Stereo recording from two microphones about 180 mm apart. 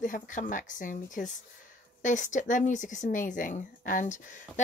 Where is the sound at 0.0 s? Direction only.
45° left (ahead or behind).